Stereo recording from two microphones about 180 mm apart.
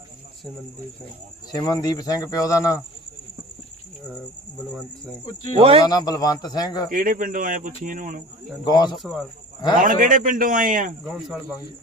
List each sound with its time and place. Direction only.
1.5 s speech: 20° left (ahead or behind)
5.2 s speech: 30° left (ahead or behind)
5.5 s speech: 30° right (ahead or behind)
5.8 s speech: 20° left (ahead or behind)
6.9 s speech: 50° right (ahead or behind)
8.6 s speech: 25° left (ahead or behind)
9.0 s speech: centre (ahead or behind)
9.8 s speech: 45° right (ahead or behind)
11.0 s speech: 5° right (ahead or behind)